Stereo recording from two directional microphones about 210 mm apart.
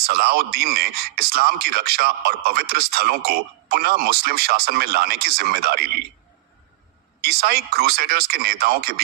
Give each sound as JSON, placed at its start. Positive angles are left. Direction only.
{"t": 0.0, "sound": "a man's voice", "side_deg": -45}
{"t": 7.2, "sound": "a man's voice", "side_deg": -50}